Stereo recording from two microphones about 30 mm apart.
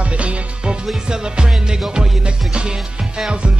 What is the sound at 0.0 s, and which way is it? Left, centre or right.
Music, right.